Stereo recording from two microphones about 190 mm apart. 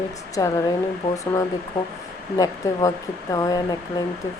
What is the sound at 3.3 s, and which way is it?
Speech, 20° left (ahead or behind).